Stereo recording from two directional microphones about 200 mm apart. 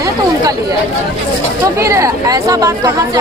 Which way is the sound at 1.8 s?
15° right (ahead or behind).